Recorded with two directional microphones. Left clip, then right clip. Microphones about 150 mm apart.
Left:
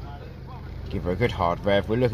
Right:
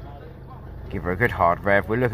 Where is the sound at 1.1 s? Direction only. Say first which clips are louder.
Right 4 dB; 10° left (ahead or behind).